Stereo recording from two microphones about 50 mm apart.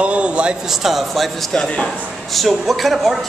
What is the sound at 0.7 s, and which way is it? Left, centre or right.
Speech, centre.